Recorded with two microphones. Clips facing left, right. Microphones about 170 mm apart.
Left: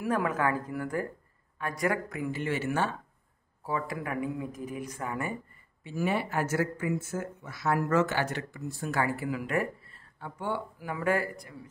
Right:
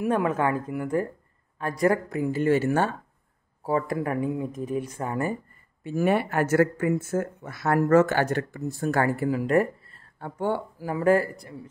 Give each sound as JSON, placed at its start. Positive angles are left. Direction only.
{"t": 0.0, "sound": "a woman's voice", "side_deg": -25}
{"t": 1.6, "sound": "speech", "side_deg": -35}
{"t": 5.9, "sound": "speech", "side_deg": -55}
{"t": 10.2, "sound": "speech", "side_deg": -50}
{"t": 10.8, "sound": "speech", "side_deg": -35}